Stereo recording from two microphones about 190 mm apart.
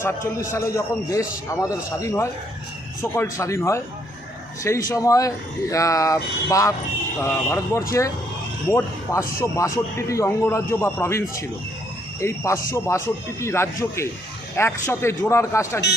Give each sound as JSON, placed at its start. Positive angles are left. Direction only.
{"t": 0.5, "sound": "speech", "side_deg": 15}
{"t": 9.4, "sound": "speech", "side_deg": 15}